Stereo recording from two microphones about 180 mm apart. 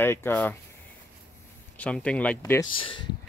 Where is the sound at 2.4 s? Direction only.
15° left (ahead or behind).